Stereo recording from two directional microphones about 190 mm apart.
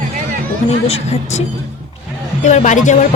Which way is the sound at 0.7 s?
35° left (ahead or behind).